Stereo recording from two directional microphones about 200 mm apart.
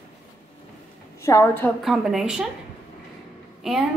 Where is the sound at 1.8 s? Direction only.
Centre (ahead or behind).